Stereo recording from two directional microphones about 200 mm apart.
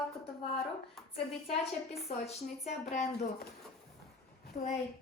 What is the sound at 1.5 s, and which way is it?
A woman's voice, 30° left (ahead or behind).